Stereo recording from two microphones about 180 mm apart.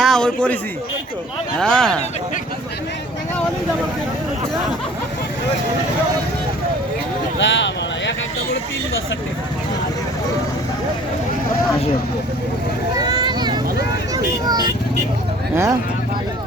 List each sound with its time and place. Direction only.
0.0 s speech: 5° left (ahead or behind)
7.3 s a sound: 85° left
13.0 s vehicle: 25° right (ahead or behind)
14.1 s speech: 20° right (ahead or behind)